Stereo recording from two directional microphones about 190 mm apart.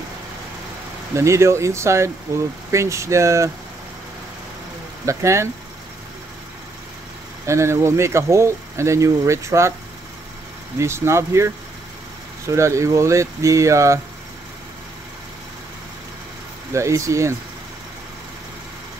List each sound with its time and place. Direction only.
1.1 s speech: 15° right (ahead or behind)
5.0 s speech: 15° right (ahead or behind)
7.4 s speech: 15° right (ahead or behind)
10.8 s speech: 15° right (ahead or behind)
16.7 s speech: 15° right (ahead or behind)